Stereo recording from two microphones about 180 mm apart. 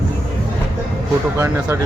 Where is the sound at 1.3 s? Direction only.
15° right (ahead or behind).